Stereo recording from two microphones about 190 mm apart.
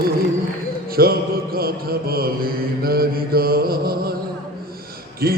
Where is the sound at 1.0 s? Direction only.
55° right (ahead or behind).